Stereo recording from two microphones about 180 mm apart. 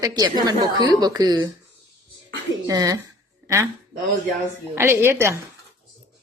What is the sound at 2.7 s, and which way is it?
Speech, 20° right (ahead or behind).